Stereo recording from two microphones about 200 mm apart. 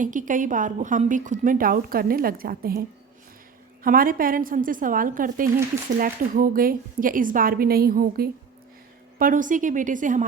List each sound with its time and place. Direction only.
0.0 s a woman's voice: 40° right (ahead or behind)
3.8 s a woman's voice: 45° right (ahead or behind)